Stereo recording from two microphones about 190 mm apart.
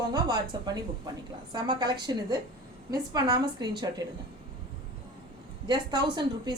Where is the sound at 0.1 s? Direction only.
20° right (ahead or behind).